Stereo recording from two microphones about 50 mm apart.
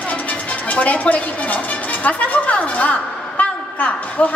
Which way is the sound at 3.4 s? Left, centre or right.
Left.